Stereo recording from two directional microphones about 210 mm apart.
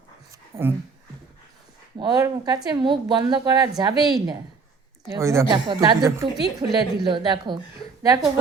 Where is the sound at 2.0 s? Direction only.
20° right (ahead or behind).